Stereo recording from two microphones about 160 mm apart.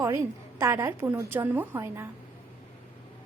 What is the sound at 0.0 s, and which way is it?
A woman's voice, 20° right (ahead or behind).